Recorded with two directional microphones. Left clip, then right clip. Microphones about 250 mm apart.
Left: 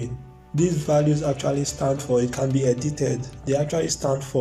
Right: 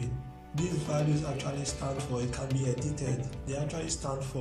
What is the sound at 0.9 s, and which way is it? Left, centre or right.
Music, left.